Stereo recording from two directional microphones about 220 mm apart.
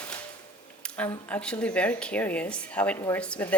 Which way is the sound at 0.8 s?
5° left (ahead or behind).